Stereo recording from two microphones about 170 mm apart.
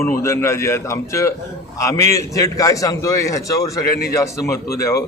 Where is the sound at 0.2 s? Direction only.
15° left (ahead or behind).